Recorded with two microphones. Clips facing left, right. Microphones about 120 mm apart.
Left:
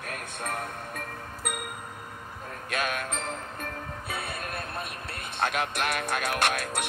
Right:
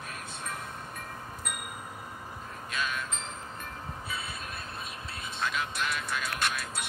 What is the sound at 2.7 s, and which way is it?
Music, 60° left (ahead or behind).